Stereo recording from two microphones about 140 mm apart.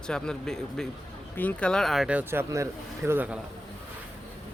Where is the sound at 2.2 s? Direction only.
15° right (ahead or behind).